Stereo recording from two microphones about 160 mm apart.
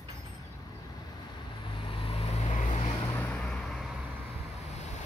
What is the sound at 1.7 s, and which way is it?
Vehicle, 35° left (ahead or behind).